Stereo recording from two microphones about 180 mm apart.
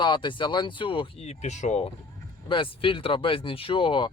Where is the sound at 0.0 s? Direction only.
25° left (ahead or behind).